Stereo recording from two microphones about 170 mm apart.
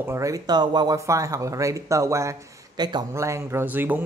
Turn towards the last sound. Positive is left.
turn(degrees=-10)  # may be behind; listen again after turning